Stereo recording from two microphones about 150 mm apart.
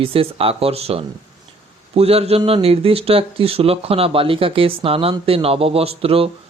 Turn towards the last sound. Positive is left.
turn(degrees=-40)  # may be behind; listen again after turning